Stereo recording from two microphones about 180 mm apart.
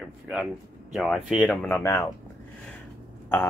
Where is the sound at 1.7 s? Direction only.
15° left (ahead or behind).